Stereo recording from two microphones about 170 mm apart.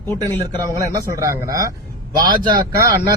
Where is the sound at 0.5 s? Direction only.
20° right (ahead or behind).